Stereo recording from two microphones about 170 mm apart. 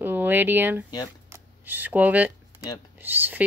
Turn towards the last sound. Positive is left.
turn(degrees=-10)  # may be behind; listen again after turning